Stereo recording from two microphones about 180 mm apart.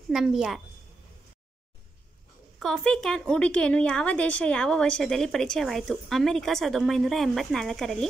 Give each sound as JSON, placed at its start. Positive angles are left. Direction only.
{"t": 0.1, "sound": "a woman's voice", "side_deg": 0}
{"t": 2.6, "sound": "a woman's voice", "side_deg": 5}